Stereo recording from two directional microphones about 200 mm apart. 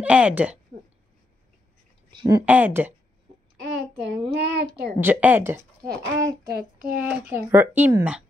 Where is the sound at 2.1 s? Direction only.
25° right (ahead or behind).